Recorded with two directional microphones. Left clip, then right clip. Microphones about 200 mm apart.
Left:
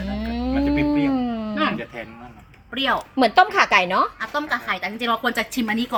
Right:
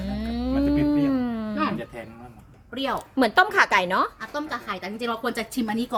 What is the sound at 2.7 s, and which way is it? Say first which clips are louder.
Speech: left 6 dB; 10° right (ahead or behind).